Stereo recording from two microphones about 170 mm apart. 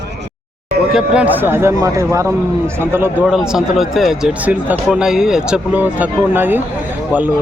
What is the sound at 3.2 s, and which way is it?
Speech, 5° right (ahead or behind).